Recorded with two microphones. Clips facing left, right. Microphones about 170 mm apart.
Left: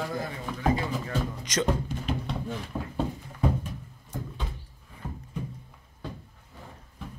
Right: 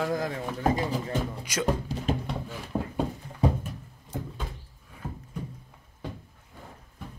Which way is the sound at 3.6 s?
5° right (ahead or behind).